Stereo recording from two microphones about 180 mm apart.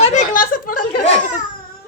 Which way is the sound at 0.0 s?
40° left (ahead or behind).